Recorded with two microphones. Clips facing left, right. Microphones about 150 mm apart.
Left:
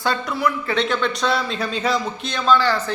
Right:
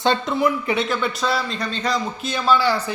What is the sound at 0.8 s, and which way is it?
A man's voice, 5° right (ahead or behind).